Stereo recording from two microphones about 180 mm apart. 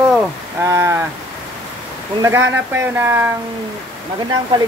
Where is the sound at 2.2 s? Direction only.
15° right (ahead or behind).